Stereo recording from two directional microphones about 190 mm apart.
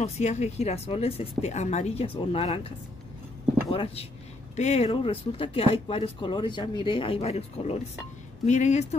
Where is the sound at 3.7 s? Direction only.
30° left (ahead or behind).